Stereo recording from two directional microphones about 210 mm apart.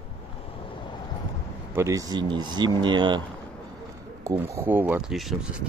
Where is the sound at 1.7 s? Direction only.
15° right (ahead or behind).